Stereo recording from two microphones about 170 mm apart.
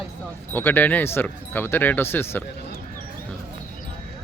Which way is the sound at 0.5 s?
10° left (ahead or behind).